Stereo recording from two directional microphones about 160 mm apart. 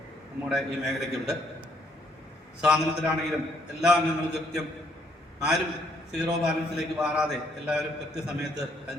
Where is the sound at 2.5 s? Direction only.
5° right (ahead or behind).